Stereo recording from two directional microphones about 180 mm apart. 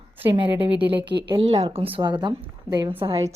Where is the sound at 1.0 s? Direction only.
70° right (ahead or behind).